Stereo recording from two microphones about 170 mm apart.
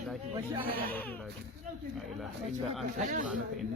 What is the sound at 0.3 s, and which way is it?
Speech, 30° right (ahead or behind).